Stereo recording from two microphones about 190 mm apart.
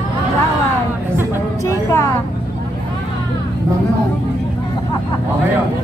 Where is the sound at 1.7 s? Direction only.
15° left (ahead or behind).